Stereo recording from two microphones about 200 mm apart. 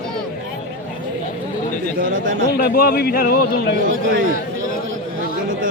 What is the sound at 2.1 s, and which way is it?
Speech, 80° right.